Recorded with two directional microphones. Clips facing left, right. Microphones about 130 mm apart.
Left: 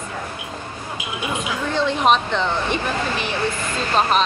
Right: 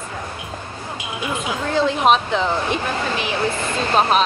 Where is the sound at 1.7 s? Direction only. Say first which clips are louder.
Right 2 dB; centre (ahead or behind).